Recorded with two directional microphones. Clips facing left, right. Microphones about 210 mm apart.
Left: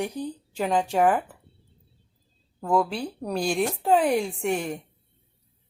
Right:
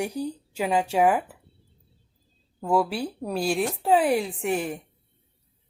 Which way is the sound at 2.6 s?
5° right (ahead or behind).